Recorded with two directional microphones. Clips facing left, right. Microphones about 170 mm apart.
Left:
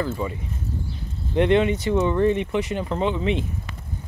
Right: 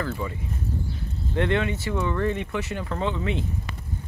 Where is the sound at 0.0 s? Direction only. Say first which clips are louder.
Left 3 dB; 20° left (ahead or behind).